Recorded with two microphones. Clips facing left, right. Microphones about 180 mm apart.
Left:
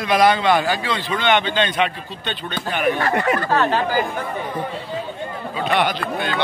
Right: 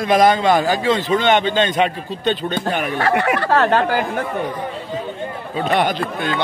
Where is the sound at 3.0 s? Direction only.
70° right (ahead or behind).